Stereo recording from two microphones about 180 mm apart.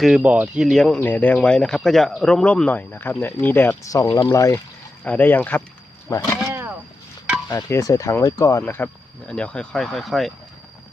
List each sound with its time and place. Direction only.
0.0 s speech: 5° right (ahead or behind); by 6.3 s 15° left (ahead or behind)
6.5 s vehicle: 10° right (ahead or behind)
7.4 s speech: 20° left (ahead or behind); by 10.3 s centre (ahead or behind)